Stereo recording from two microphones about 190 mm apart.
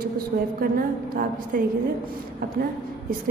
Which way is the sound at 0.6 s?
50° right (ahead or behind).